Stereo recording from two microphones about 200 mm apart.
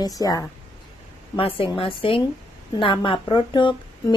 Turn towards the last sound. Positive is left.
turn(degrees=20)  # may be behind; listen again after turning